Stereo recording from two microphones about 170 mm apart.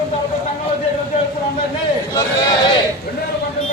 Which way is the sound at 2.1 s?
20° left (ahead or behind).